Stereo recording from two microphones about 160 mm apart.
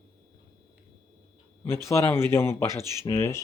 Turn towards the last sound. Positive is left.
turn(degrees=15)  # may be behind; listen again after turning